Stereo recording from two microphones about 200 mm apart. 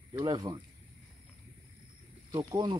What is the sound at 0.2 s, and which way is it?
Speech, 20° right (ahead or behind).